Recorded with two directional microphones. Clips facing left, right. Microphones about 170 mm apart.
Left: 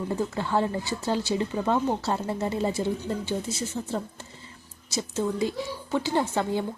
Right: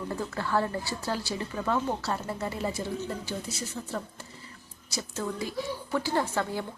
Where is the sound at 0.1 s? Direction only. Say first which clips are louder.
Left 2 dB; 20° left (ahead or behind).